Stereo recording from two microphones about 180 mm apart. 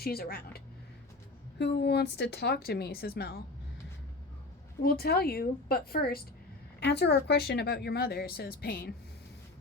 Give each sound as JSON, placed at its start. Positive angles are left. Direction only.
{"t": 0.0, "sound": "speech", "side_deg": 60}
{"t": 4.8, "sound": "speech", "side_deg": 60}